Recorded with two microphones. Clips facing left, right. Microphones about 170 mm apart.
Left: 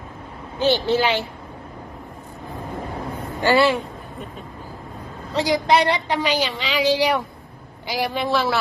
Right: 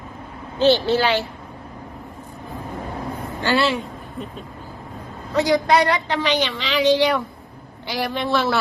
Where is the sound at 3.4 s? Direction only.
Centre (ahead or behind).